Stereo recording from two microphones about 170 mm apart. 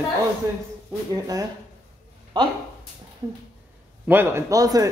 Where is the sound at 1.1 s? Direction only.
20° right (ahead or behind).